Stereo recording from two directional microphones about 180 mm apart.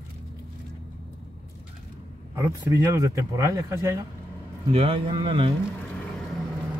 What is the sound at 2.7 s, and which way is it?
Speech, 15° right (ahead or behind).